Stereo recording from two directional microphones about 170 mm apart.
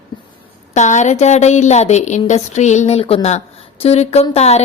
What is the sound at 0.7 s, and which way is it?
A woman's voice, 45° left (ahead or behind).